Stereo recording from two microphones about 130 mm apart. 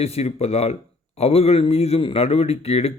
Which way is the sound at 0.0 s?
50° left (ahead or behind).